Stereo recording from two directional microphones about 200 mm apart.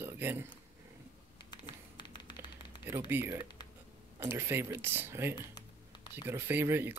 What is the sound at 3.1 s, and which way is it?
Speech, 10° right (ahead or behind).